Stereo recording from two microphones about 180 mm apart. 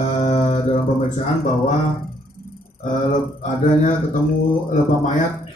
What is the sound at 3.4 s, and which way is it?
Mantra, 45° left (ahead or behind).